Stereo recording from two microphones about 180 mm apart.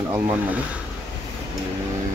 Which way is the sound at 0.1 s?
10° right (ahead or behind).